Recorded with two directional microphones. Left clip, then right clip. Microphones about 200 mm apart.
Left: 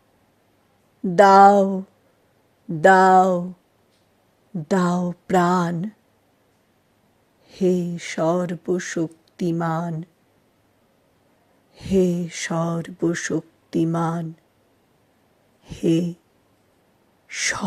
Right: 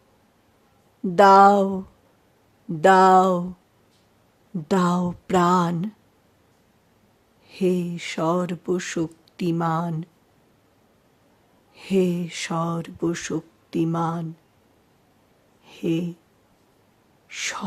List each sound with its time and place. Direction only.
1.1 s speech: 15° left (ahead or behind)
2.8 s speech: 10° left (ahead or behind)
4.7 s speech: 5° left (ahead or behind)
7.4 s speech: 10° left (ahead or behind)
11.7 s speech: 10° left (ahead or behind)
15.6 s speech: 15° left (ahead or behind)
17.2 s owl: 15° left (ahead or behind)